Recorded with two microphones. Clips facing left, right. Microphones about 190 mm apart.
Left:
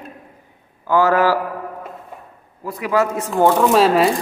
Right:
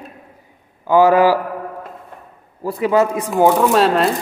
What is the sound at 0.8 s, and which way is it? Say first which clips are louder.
Speech: right 4 dB; 15° right (ahead or behind).